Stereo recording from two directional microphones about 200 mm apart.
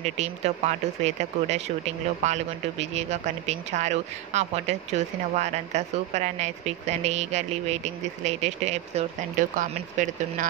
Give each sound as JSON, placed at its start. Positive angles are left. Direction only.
{"t": 0.2, "sound": "speech", "side_deg": -35}